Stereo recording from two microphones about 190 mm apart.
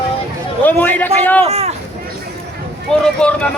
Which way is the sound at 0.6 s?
10° left (ahead or behind).